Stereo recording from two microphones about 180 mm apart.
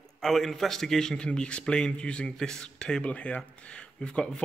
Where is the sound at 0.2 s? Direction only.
Centre (ahead or behind).